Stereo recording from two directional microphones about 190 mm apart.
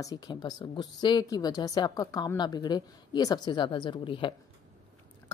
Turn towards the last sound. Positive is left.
turn(degrees=25)  # may be behind; listen again after turning